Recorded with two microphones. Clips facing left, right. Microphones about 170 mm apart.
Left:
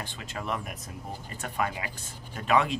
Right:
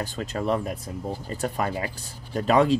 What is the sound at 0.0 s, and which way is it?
Speech, 40° right (ahead or behind).